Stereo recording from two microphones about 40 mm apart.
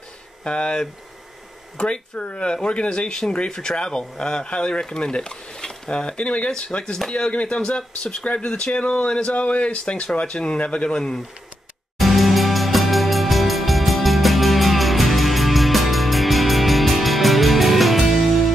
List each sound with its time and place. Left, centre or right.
0.4 s speech: left
9.3 s speech: left
11.0 s speech: centre
12.0 s music: centre